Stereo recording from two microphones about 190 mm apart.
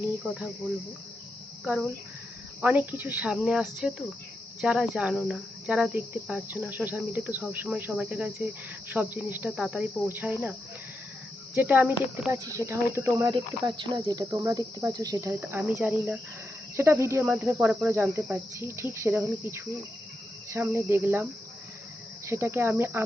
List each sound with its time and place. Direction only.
1.6 s speech: 5° right (ahead or behind)
4.6 s cricket: 5° right (ahead or behind)
11.5 s cricket: 10° right (ahead or behind)
22.3 s cricket: 15° right (ahead or behind)